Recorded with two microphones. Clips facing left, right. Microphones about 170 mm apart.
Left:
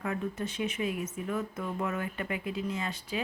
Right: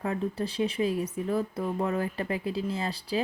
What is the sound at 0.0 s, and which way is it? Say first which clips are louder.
A woman's voice: right 3 dB; 35° right (ahead or behind).